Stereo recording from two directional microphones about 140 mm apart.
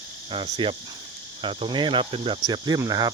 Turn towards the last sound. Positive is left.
turn(degrees=-25)  # may be behind; listen again after turning